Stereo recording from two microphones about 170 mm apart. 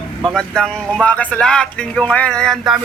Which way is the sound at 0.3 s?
5° left (ahead or behind).